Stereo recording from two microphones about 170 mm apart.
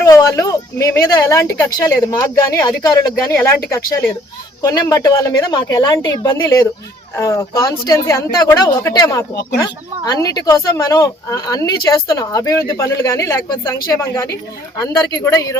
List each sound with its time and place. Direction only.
0.0 s speech: 20° left (ahead or behind)
9.3 s speech: 70° left (ahead or behind)
9.6 s speech: 20° left (ahead or behind)